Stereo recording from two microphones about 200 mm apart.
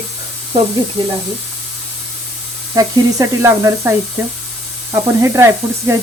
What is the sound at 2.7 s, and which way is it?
Sizzle, 15° right (ahead or behind).